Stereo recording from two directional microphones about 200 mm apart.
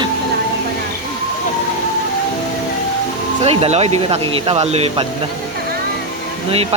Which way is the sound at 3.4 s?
30° right (ahead or behind).